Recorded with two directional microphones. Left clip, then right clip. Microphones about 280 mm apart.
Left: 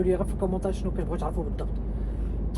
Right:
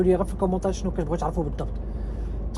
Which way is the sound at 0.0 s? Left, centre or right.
Right.